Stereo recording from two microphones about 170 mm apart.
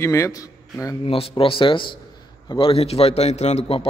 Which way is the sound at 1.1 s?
35° left (ahead or behind).